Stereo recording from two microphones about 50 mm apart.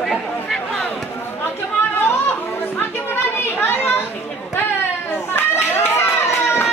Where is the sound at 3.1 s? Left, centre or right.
Left.